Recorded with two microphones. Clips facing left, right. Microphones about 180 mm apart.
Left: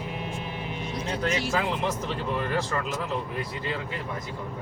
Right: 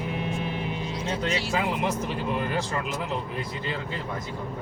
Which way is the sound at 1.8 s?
15° right (ahead or behind).